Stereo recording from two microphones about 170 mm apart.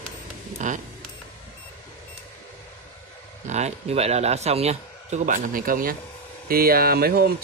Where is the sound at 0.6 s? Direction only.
45° right (ahead or behind).